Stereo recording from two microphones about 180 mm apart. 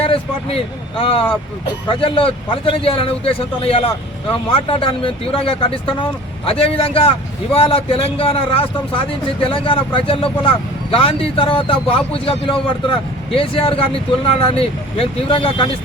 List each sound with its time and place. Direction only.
0.0 s a man's voice: 30° left (ahead or behind)